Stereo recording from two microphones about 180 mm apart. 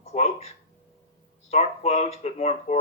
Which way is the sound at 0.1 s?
35° left (ahead or behind).